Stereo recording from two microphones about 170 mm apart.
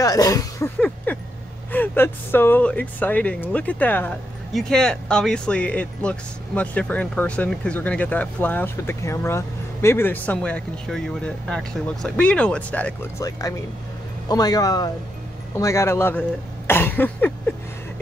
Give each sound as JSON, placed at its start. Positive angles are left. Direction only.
{"t": 0.0, "sound": "speech", "side_deg": 20}
{"t": 0.7, "sound": "a sound", "side_deg": 10}
{"t": 1.7, "sound": "speech", "side_deg": 10}
{"t": 13.2, "sound": "a man's voice", "side_deg": 20}